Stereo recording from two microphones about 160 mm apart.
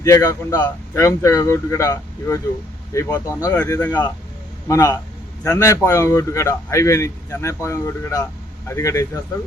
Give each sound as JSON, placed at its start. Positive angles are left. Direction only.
{"t": 0.0, "sound": "speech", "side_deg": 20}